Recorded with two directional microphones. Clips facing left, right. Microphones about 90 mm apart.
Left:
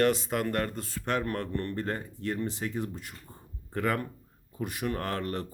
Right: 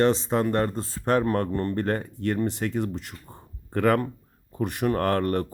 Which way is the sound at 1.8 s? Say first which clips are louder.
Right 7 dB; 65° right (ahead or behind).